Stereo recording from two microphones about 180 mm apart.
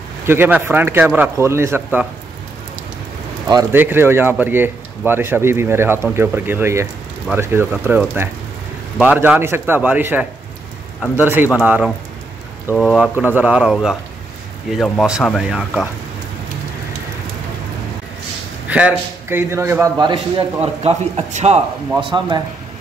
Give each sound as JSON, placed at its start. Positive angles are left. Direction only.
{"t": 0.3, "sound": "speech", "side_deg": -10}
{"t": 3.7, "sound": "speech", "side_deg": -10}
{"t": 18.7, "sound": "a man's voice", "side_deg": -10}
{"t": 22.0, "sound": "a man's voice", "side_deg": -25}